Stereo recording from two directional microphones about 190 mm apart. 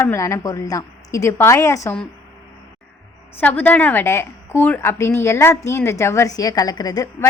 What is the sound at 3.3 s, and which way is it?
A woman's voice, 10° left (ahead or behind).